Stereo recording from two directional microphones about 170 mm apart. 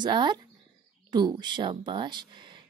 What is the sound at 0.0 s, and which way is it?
A woman's voice, 25° right (ahead or behind).